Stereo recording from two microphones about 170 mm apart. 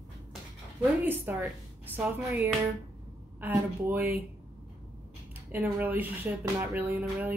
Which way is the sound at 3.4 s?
15° right (ahead or behind).